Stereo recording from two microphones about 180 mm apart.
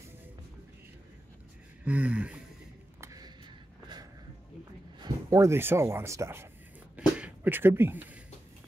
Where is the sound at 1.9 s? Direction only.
10° right (ahead or behind).